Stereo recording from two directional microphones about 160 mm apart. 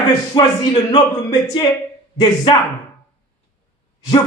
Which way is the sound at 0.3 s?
30° left (ahead or behind).